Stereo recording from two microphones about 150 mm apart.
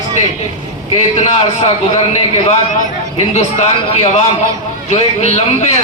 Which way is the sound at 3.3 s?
45° left (ahead or behind).